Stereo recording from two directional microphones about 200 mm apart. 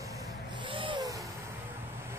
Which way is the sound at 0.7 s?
25° right (ahead or behind).